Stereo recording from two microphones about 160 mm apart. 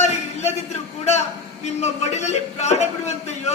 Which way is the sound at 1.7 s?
45° left (ahead or behind).